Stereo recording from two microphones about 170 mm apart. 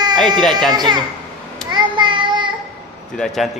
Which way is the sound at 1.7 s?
25° right (ahead or behind).